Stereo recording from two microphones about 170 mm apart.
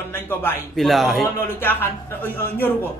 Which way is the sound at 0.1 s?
10° left (ahead or behind).